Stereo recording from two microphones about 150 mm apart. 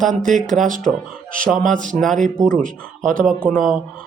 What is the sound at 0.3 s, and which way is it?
Speech, centre (ahead or behind).